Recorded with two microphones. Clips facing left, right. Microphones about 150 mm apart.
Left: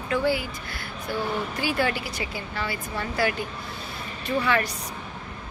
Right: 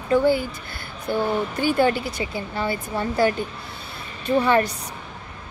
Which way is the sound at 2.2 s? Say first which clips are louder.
Right 5 dB; 25° right (ahead or behind).